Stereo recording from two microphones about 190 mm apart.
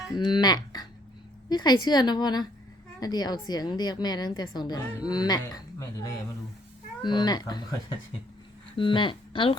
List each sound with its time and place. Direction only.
0.2 s a woman's voice: 20° left (ahead or behind)
8.8 s a woman's voice: 25° left (ahead or behind)